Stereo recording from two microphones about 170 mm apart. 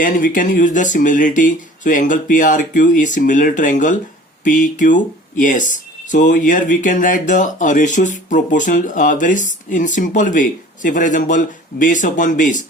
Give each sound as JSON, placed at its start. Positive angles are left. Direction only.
{"t": 0.0, "sound": "speech", "side_deg": 50}